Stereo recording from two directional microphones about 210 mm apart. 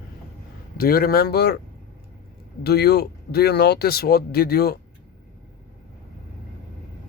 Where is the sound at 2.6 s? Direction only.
50° left (ahead or behind).